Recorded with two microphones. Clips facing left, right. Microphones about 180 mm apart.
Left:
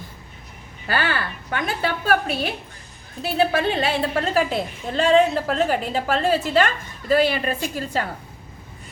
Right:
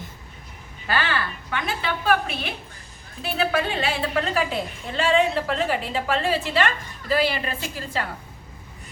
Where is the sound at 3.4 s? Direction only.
40° left (ahead or behind).